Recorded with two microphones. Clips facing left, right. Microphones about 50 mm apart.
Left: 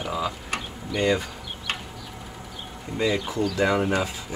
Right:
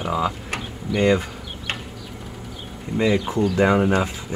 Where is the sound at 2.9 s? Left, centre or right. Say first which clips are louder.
Right 4 dB; centre.